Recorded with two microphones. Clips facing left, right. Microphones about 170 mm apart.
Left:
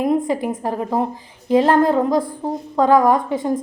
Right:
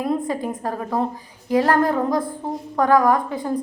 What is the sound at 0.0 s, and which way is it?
A woman's voice, 20° left (ahead or behind).